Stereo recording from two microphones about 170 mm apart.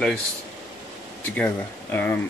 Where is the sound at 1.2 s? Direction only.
10° left (ahead or behind).